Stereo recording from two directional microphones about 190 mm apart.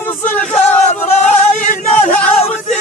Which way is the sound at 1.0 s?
40° left (ahead or behind).